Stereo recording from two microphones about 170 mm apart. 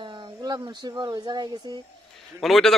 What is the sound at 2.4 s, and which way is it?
Speech, centre (ahead or behind).